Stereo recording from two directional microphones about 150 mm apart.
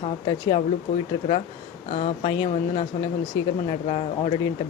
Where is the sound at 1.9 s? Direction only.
40° left (ahead or behind).